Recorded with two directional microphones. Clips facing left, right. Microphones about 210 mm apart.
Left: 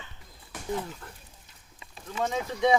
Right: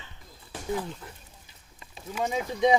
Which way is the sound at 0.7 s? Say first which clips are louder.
Right 1 dB; 5° right (ahead or behind).